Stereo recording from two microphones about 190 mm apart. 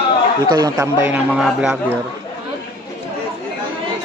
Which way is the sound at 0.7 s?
5° right (ahead or behind).